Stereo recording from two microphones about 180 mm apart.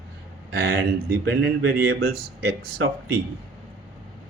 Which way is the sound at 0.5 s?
60° right (ahead or behind).